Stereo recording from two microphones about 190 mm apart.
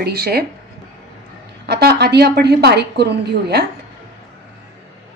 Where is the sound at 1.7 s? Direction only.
55° right (ahead or behind).